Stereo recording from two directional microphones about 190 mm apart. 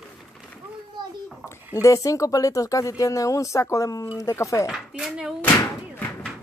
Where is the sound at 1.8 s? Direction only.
15° left (ahead or behind).